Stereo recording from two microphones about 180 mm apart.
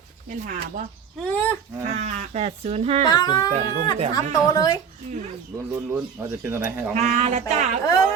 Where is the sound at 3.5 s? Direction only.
40° right (ahead or behind).